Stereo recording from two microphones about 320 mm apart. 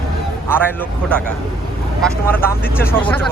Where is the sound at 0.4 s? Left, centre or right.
Centre.